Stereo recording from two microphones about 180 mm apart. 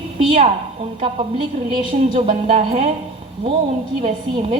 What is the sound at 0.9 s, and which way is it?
A woman's voice, 35° right (ahead or behind).